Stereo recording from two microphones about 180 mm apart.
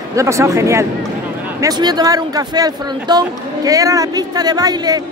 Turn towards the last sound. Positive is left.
turn(degrees=-20)  # may be behind; listen again after turning